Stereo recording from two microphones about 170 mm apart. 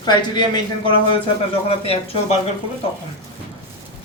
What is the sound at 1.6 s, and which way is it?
Speech, 35° left (ahead or behind).